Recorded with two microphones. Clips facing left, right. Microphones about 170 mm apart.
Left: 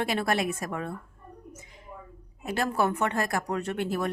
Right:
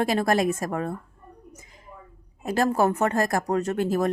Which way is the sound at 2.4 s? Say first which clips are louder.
Right 5 dB; 40° right (ahead or behind).